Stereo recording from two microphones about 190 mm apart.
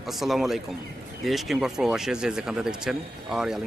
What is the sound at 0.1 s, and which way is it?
Speech, centre (ahead or behind).